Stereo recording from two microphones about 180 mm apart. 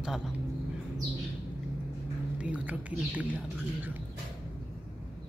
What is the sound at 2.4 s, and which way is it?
Speech, 10° right (ahead or behind).